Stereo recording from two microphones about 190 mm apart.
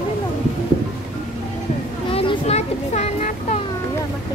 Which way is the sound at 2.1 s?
30° left (ahead or behind).